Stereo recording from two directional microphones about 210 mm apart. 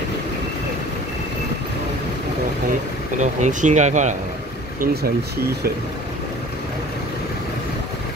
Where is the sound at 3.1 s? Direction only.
35° right (ahead or behind).